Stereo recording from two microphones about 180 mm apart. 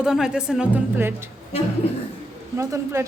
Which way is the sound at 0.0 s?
5° right (ahead or behind).